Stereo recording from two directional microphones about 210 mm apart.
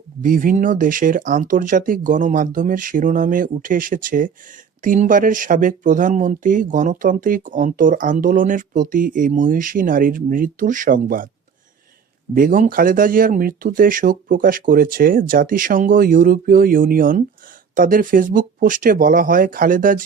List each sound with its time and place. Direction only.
0.2 s speech: 40° right (ahead or behind)
12.3 s speech: 40° right (ahead or behind)